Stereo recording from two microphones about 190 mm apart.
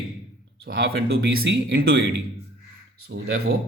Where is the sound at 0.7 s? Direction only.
55° right (ahead or behind).